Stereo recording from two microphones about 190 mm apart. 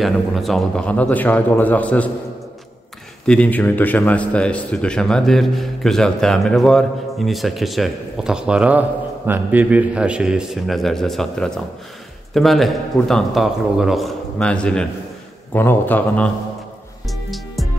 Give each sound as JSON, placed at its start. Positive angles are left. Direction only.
{"t": 0.0, "sound": "a man's voice", "side_deg": 0}
{"t": 3.3, "sound": "a man's voice", "side_deg": 5}
{"t": 17.1, "sound": "music", "side_deg": 0}